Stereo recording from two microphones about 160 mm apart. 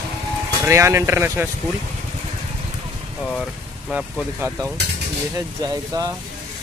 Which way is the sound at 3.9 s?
15° right (ahead or behind).